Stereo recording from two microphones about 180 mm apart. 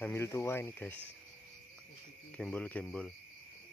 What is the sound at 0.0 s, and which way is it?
Speech, 15° left (ahead or behind).